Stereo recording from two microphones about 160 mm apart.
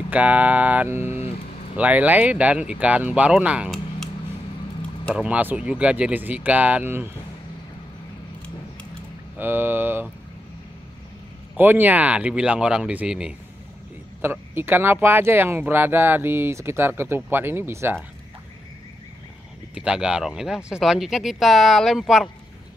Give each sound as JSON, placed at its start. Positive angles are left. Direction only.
{"t": 0.1, "sound": "speech", "side_deg": -10}
{"t": 1.0, "sound": "speech", "side_deg": 40}
{"t": 1.8, "sound": "speech", "side_deg": -10}
{"t": 5.1, "sound": "speech", "side_deg": -5}
{"t": 9.4, "sound": "speech", "side_deg": -10}
{"t": 11.5, "sound": "speech", "side_deg": -10}
{"t": 19.7, "sound": "speech", "side_deg": -5}